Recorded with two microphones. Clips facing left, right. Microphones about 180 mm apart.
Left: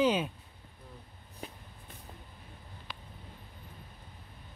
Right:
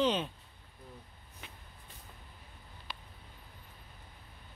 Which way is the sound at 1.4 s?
40° left (ahead or behind).